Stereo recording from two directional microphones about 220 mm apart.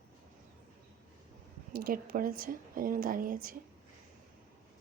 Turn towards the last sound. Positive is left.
turn(degrees=-40)  # may be behind; listen again after turning